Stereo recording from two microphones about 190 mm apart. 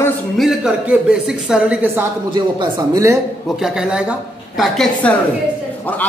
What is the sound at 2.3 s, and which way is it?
Speech, 20° right (ahead or behind).